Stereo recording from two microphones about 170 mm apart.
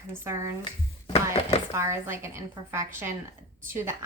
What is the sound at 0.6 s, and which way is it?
Speech, 30° left (ahead or behind).